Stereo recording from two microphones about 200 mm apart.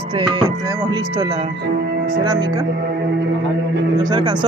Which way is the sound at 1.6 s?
55° right (ahead or behind).